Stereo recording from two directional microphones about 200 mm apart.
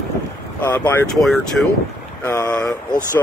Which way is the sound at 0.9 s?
5° left (ahead or behind).